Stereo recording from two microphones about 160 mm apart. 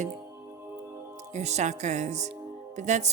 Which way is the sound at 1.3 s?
45° right (ahead or behind).